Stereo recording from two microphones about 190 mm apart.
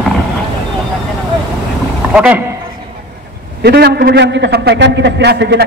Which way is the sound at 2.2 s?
5° right (ahead or behind).